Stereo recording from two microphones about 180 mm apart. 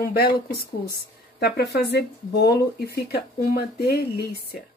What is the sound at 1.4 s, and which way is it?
Speech, 65° left (ahead or behind).